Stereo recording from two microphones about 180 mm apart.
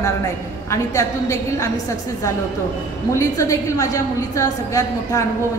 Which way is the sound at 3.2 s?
20° left (ahead or behind).